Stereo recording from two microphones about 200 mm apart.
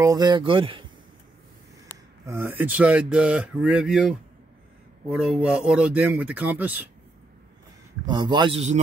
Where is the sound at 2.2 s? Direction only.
10° right (ahead or behind).